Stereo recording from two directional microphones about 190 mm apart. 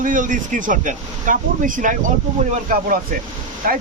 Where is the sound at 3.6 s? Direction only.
50° right (ahead or behind).